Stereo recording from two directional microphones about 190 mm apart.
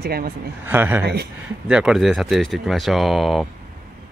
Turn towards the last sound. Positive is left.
turn(degrees=0)  # may be behind; listen again after turning